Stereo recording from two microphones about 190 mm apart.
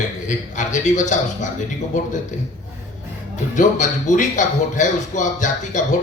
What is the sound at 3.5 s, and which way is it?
A man's voice, 40° left (ahead or behind).